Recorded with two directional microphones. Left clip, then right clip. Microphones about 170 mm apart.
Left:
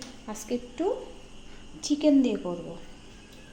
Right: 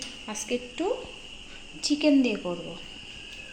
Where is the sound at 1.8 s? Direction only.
10° left (ahead or behind).